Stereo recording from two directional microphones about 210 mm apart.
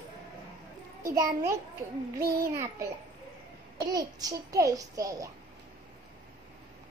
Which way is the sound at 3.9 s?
15° right (ahead or behind).